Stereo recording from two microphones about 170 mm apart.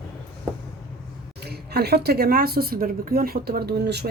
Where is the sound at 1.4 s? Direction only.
70° right (ahead or behind).